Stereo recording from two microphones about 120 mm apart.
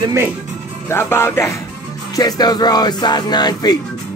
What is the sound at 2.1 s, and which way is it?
Speech, 35° left (ahead or behind).